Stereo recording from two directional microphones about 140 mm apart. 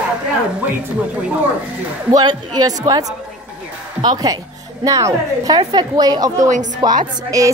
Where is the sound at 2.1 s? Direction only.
30° right (ahead or behind).